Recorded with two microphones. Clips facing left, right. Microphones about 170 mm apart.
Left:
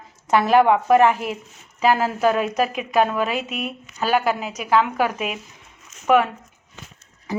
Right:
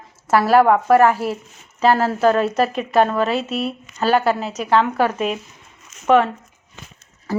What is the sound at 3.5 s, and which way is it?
Speech, 35° right (ahead or behind).